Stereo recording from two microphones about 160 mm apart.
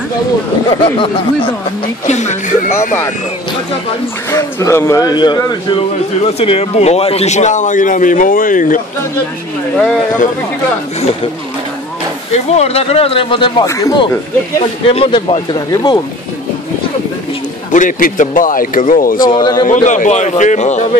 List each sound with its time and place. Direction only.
0.7 s speech: 35° left (ahead or behind)
2.0 s a man's voice: 45° left (ahead or behind)
2.7 s speech: 15° left (ahead or behind)
4.3 s a man's voice: 20° left (ahead or behind)
6.2 s a man's voice: 40° left (ahead or behind); by 8.8 s 55° left (ahead or behind)
12.4 s speech: 40° left (ahead or behind)
13.7 s a man's voice: 20° left (ahead or behind)
17.6 s speech: 55° left (ahead or behind)
19.3 s a man's voice: 25° left (ahead or behind)
19.6 s a man's voice: 50° left (ahead or behind)